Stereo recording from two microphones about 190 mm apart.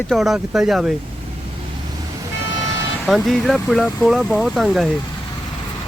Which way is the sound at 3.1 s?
Centre (ahead or behind).